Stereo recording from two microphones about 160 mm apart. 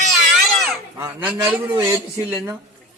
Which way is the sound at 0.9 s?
15° right (ahead or behind).